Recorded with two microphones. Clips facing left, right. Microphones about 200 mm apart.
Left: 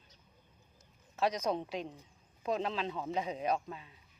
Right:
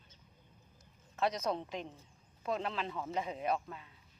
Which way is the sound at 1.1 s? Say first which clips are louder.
Left 2 dB; 15° left (ahead or behind).